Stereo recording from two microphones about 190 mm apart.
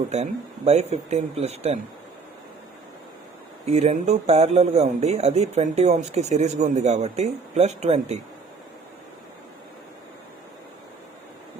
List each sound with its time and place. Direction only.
0.1 s speech: 35° right (ahead or behind)
3.7 s speech: 35° right (ahead or behind)